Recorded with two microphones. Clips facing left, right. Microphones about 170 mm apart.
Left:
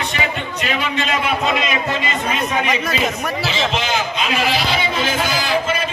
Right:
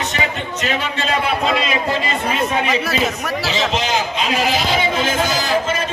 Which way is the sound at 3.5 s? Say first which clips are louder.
Right 2 dB; 40° right (ahead or behind).